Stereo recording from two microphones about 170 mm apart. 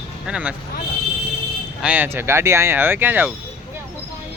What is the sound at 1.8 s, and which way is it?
Speech, 10° right (ahead or behind).